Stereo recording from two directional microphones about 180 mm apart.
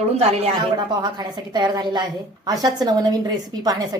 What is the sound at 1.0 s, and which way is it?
A woman's voice, 25° right (ahead or behind).